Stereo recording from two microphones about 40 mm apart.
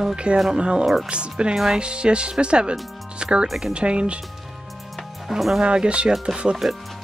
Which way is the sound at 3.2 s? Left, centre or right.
Right.